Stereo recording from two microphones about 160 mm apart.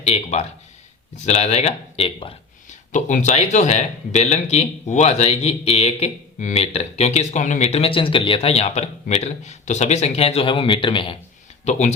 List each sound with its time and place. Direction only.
0.0 s speech: 40° left (ahead or behind)
2.6 s speech: 50° left (ahead or behind); by 11.2 s 30° left (ahead or behind)
11.6 s speech: 45° left (ahead or behind)